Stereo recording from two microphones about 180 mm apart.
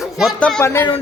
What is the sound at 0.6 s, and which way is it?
Speech, 15° left (ahead or behind).